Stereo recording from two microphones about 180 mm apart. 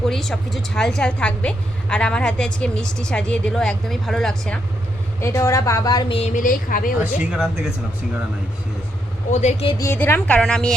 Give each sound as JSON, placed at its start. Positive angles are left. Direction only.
{"t": 0.0, "sound": "a woman's voice", "side_deg": 0}
{"t": 5.2, "sound": "a woman's voice", "side_deg": 15}
{"t": 7.0, "sound": "a woman's voice", "side_deg": -5}
{"t": 9.3, "sound": "speech", "side_deg": 40}
{"t": 9.7, "sound": "speech", "side_deg": 15}